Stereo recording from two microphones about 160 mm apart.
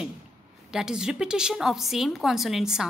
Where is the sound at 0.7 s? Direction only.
5° right (ahead or behind).